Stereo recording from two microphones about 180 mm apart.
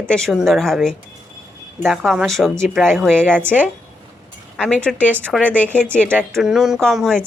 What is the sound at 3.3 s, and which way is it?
Speech, 10° right (ahead or behind).